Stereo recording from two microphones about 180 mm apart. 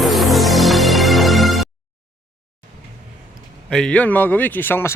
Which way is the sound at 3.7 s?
5° left (ahead or behind).